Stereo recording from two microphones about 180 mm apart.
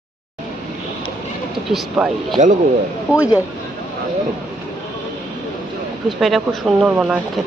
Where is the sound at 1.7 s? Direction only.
Centre (ahead or behind).